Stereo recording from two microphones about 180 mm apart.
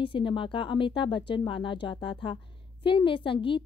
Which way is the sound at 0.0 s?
25° left (ahead or behind).